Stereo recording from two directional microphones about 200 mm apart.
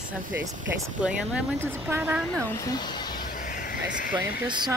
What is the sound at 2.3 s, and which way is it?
Speech, 10° left (ahead or behind).